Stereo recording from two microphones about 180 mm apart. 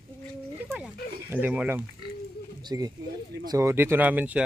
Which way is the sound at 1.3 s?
10° right (ahead or behind).